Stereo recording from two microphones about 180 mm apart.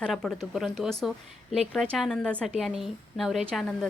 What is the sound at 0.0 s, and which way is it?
A woman's voice, 5° left (ahead or behind).